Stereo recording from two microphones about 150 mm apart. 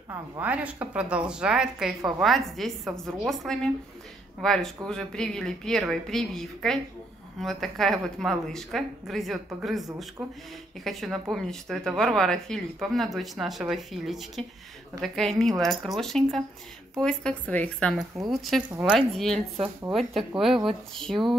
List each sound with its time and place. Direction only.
0.1 s a woman's voice: 10° right (ahead or behind)
18.7 s a woman's voice: 10° right (ahead or behind)
18.9 s a woman's voice: centre (ahead or behind)